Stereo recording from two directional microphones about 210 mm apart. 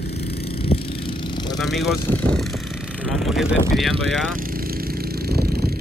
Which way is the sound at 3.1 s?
Centre (ahead or behind).